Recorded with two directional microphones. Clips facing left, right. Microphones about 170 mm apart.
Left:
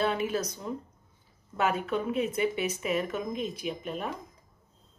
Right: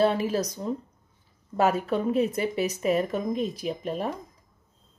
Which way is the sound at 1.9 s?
35° right (ahead or behind).